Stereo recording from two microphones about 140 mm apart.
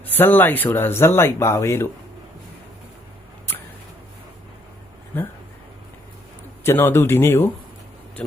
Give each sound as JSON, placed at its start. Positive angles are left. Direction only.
{"t": 0.0, "sound": "speech", "side_deg": 15}
{"t": 6.7, "sound": "speech", "side_deg": 15}